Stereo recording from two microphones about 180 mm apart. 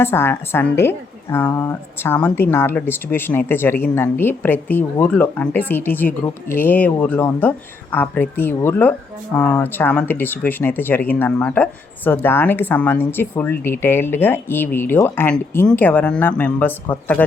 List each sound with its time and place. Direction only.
0.0 s a woman's voice: 10° left (ahead or behind)